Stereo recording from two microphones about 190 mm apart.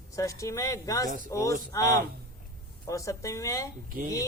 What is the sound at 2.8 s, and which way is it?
Speech, 15° left (ahead or behind).